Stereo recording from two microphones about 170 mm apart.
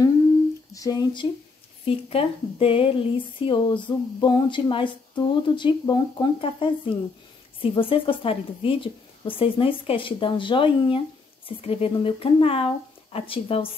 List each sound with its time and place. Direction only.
0.7 s a woman's voice: 20° left (ahead or behind)